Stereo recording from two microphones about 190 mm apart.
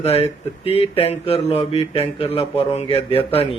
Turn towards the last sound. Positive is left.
turn(degrees=30)  # may be behind; listen again after turning